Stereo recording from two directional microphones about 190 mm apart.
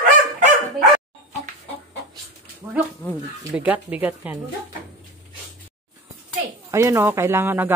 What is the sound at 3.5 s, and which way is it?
Speech, 10° right (ahead or behind).